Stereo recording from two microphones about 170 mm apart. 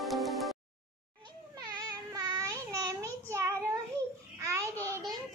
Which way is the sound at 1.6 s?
20° right (ahead or behind).